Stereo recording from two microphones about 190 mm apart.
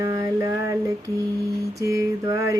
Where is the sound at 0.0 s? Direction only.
15° right (ahead or behind).